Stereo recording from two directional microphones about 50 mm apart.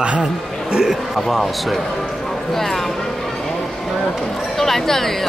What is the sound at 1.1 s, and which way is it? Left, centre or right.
Speech, centre.